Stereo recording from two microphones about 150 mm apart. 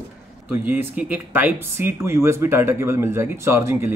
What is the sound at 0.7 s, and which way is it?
Speech, 10° right (ahead or behind).